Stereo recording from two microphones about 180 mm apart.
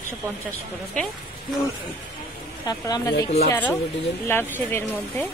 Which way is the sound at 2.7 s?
20° left (ahead or behind).